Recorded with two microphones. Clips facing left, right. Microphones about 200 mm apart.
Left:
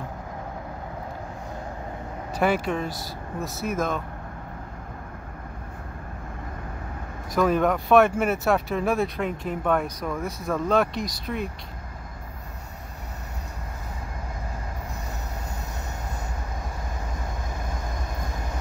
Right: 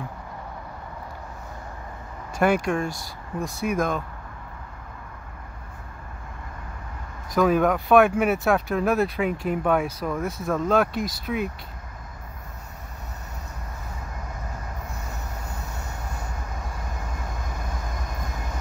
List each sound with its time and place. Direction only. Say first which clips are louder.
2.4 s speech: right 2 dB; 5° left (ahead or behind)
7.3 s speech: right 1 dB; centre (ahead or behind)